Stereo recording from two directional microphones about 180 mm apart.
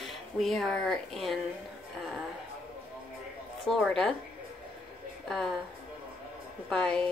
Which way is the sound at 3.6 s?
5° left (ahead or behind).